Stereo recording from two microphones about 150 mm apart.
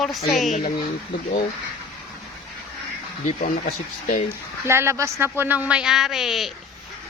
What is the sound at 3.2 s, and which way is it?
Speech, 60° left (ahead or behind).